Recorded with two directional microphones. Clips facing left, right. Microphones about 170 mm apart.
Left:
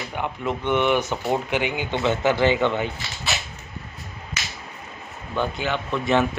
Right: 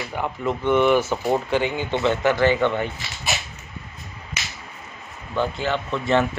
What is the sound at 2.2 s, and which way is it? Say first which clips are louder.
Speech: even; 20° left (ahead or behind).